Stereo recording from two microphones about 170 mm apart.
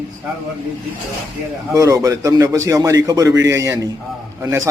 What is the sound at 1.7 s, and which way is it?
A man's voice, 20° right (ahead or behind).